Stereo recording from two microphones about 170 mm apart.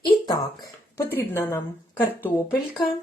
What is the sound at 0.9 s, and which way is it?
Speech, 15° left (ahead or behind).